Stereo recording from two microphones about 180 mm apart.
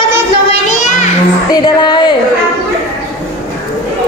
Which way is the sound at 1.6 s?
25° left (ahead or behind).